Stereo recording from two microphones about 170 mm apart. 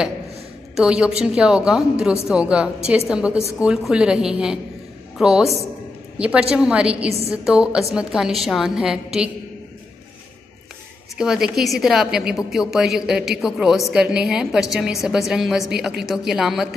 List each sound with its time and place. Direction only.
0.7 s a woman's voice: 5° right (ahead or behind)
7.1 s a woman's voice: 35° right (ahead or behind)
7.4 s a woman's voice: 5° right (ahead or behind)
11.1 s a woman's voice: 5° right (ahead or behind)